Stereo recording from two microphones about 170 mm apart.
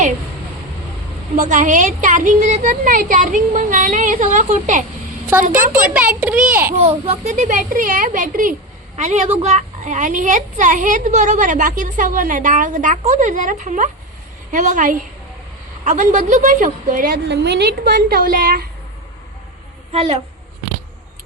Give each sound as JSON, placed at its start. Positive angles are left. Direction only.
{"t": 1.4, "sound": "a child's voice", "side_deg": -50}
{"t": 5.9, "sound": "a child's voice", "side_deg": -10}
{"t": 6.7, "sound": "a child's voice", "side_deg": -35}
{"t": 17.2, "sound": "a woman's voice", "side_deg": -85}
{"t": 19.9, "sound": "a child's voice", "side_deg": -35}